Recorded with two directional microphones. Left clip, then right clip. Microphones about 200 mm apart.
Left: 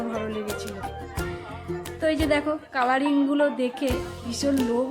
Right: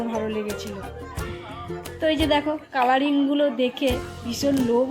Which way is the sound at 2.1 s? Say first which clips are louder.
Right 2 dB; centre (ahead or behind).